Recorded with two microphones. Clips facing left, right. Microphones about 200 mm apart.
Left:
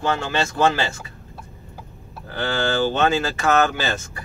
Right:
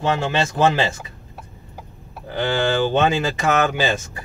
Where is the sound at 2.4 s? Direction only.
15° right (ahead or behind).